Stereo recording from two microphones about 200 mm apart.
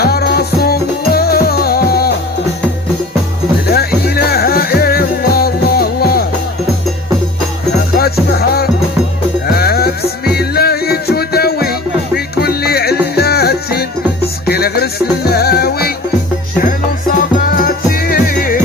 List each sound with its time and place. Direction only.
0.0 s music: 50° left (ahead or behind)
3.7 s music: 50° left (ahead or behind)
7.9 s music: 50° left (ahead or behind)